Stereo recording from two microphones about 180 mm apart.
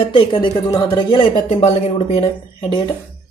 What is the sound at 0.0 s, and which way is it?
Speech, 30° left (ahead or behind).